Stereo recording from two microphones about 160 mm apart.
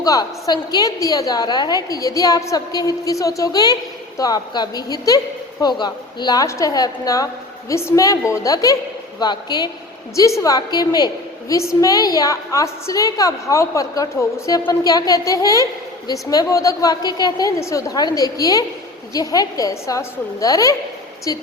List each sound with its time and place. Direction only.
0.0 s a woman's voice: 25° left (ahead or behind)